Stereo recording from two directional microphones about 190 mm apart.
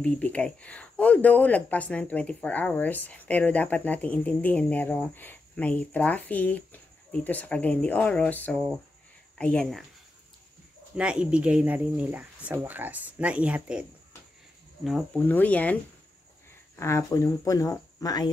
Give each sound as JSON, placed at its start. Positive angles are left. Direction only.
{"t": 0.0, "sound": "speech", "side_deg": 5}
{"t": 11.0, "sound": "speech", "side_deg": -5}
{"t": 15.2, "sound": "speech", "side_deg": 10}